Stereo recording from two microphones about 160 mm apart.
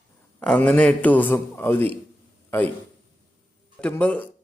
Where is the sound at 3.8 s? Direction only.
10° left (ahead or behind).